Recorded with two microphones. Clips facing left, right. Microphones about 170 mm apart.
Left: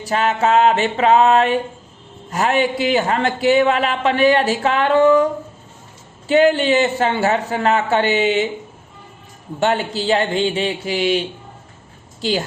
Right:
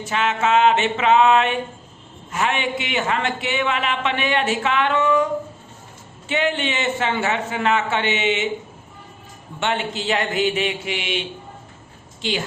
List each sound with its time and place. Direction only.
0.0 s a man's voice: 35° left (ahead or behind)
6.2 s a man's voice: 35° left (ahead or behind)
9.6 s a man's voice: 40° left (ahead or behind)
12.2 s a man's voice: 35° left (ahead or behind)